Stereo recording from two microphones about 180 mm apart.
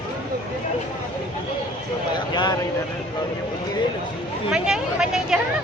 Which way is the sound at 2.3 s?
25° left (ahead or behind).